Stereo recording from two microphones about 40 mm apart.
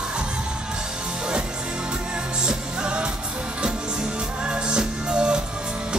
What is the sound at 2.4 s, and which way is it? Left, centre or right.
Music, right.